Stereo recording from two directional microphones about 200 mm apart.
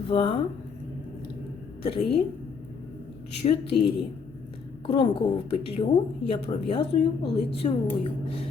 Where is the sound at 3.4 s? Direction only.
30° left (ahead or behind).